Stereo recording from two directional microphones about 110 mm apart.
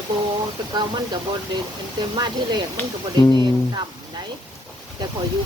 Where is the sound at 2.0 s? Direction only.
40° right (ahead or behind).